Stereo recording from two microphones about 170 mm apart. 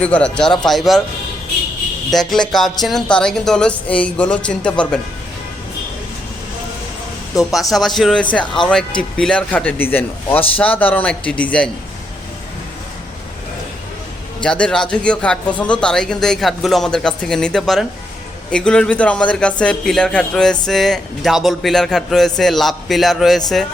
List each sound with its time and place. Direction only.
0.0 s a man's voice: 5° left (ahead or behind)
2.0 s a man's voice: centre (ahead or behind)
7.3 s speech: 20° left (ahead or behind)
7.7 s a man's voice: centre (ahead or behind)
14.4 s a man's voice: 5° left (ahead or behind)